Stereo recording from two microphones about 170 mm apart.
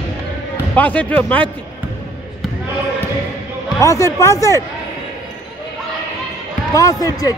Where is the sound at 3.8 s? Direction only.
20° left (ahead or behind).